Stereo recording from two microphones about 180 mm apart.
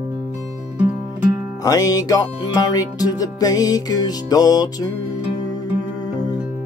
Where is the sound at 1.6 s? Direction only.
20° left (ahead or behind).